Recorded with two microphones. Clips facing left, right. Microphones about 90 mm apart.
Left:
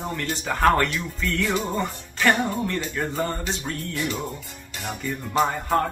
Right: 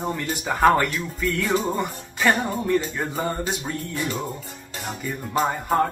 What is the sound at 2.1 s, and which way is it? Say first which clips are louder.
Music: even; 10° right (ahead or behind).